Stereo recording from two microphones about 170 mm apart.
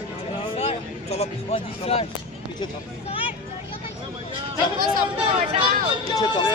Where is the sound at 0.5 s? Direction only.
40° left (ahead or behind).